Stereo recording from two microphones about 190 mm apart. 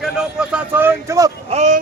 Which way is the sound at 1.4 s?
35° right (ahead or behind).